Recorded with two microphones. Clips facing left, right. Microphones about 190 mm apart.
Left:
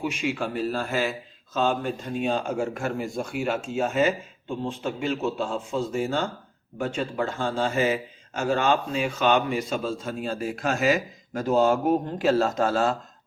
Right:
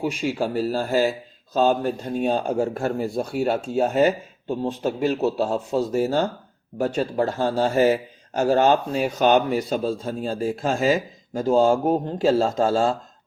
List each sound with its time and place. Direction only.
0.0 s a man's voice: 35° right (ahead or behind)